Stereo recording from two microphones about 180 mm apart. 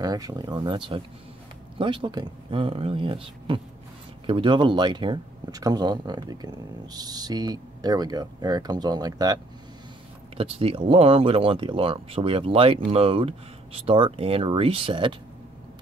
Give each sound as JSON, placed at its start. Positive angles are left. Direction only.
{"t": 0.0, "sound": "speech", "side_deg": -20}